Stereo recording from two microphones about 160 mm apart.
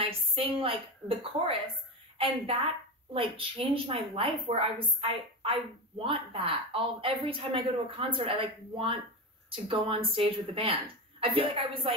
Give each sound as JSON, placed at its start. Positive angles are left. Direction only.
{"t": 0.0, "sound": "a woman's voice", "side_deg": -35}